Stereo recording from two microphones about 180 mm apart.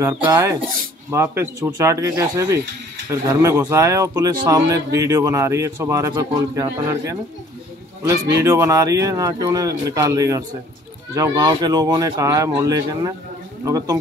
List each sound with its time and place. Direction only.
0.0 s speech: 15° right (ahead or behind)